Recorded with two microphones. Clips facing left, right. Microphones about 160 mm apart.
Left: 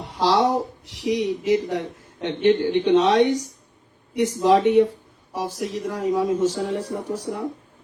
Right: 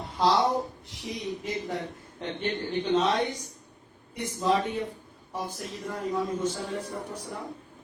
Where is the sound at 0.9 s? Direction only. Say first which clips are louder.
Left 11 dB; 90° left.